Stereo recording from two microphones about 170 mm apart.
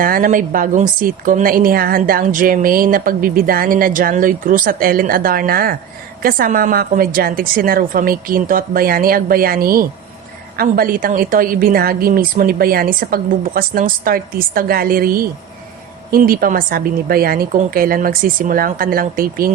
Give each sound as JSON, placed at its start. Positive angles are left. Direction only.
{"t": 0.0, "sound": "a woman's voice", "side_deg": -55}